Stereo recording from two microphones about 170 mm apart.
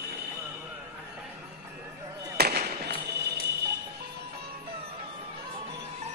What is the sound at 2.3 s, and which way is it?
Music, 65° right (ahead or behind).